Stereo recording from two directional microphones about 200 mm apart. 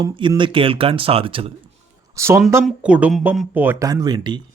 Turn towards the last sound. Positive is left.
turn(degrees=-20)  # may be behind; listen again after turning